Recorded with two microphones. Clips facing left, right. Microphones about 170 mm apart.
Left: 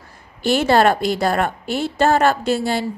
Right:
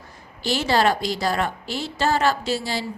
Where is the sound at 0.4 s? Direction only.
55° left (ahead or behind).